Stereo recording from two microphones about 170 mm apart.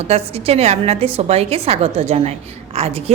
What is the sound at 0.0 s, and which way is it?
A woman's voice, 35° right (ahead or behind).